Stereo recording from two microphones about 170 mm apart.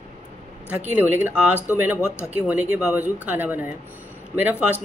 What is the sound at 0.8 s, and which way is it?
Speech, 10° right (ahead or behind).